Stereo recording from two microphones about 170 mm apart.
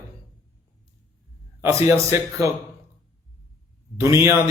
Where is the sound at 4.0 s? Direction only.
15° right (ahead or behind).